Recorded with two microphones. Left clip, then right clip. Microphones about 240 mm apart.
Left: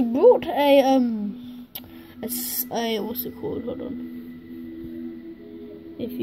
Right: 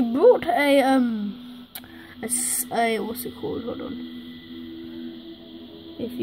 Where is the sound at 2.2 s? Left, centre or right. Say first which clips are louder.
Right 2 dB; centre.